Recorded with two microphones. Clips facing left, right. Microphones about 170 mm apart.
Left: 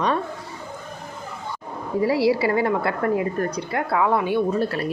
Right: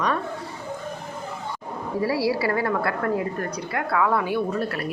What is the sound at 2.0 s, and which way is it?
A woman's voice, 20° left (ahead or behind).